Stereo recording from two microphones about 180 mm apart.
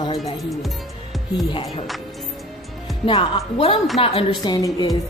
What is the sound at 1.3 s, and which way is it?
Speech, 30° left (ahead or behind).